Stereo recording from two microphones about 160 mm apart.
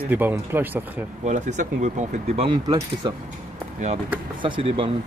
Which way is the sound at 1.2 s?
45° right (ahead or behind).